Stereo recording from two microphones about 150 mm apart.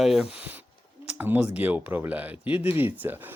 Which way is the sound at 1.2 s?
10° right (ahead or behind).